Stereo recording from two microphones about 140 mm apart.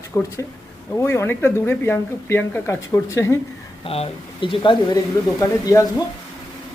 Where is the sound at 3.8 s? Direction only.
45° left (ahead or behind).